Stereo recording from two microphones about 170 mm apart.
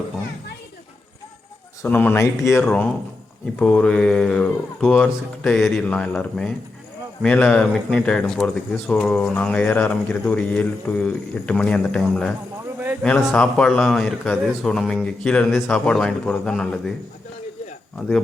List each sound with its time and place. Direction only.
1.8 s speech: 10° left (ahead or behind)
2.6 s speech: 5° left (ahead or behind)